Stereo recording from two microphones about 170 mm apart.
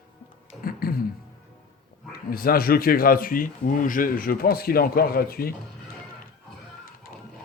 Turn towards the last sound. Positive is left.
turn(degrees=60)  # may be behind; listen again after turning